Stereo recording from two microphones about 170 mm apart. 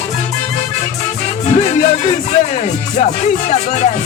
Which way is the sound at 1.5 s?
40° left (ahead or behind).